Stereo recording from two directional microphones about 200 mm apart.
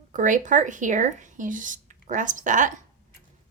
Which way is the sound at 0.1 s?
40° right (ahead or behind).